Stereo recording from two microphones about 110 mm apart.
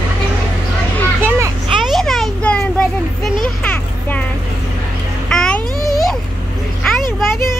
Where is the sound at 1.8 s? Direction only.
Centre (ahead or behind).